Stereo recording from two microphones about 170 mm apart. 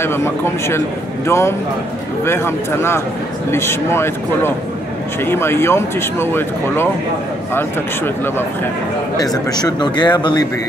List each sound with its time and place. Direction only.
0.0 s speech: 15° left (ahead or behind)
9.1 s a man's voice: 25° left (ahead or behind)